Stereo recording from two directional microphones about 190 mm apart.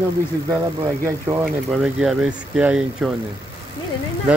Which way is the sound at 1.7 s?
5° right (ahead or behind).